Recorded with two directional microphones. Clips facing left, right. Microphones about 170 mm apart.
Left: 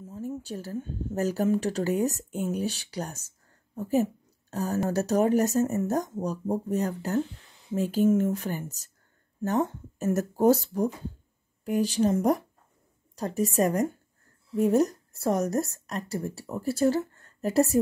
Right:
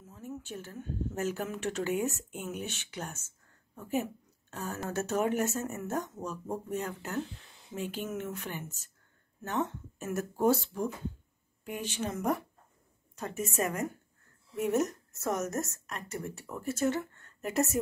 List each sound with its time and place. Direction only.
0.0 s a woman's voice: 30° left (ahead or behind)